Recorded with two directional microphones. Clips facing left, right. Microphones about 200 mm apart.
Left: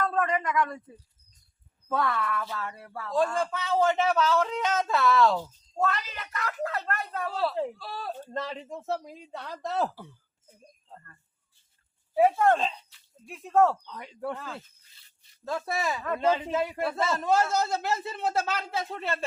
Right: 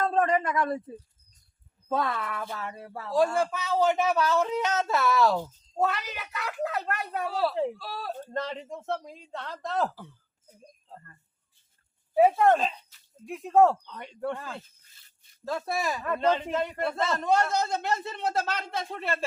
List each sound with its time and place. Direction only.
0.0 s speech: 30° right (ahead or behind)
1.9 s speech: 20° right (ahead or behind)
3.2 s speech: 10° right (ahead or behind)
7.3 s a man's voice: 5° right (ahead or behind)
12.1 s speech: 20° right (ahead or behind)
14.0 s a man's voice: centre (ahead or behind)
15.4 s a man's voice: centre (ahead or behind)